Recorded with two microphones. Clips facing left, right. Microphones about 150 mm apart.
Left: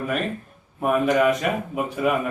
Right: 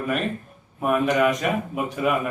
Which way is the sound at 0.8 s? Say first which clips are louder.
Left 1 dB; centre (ahead or behind).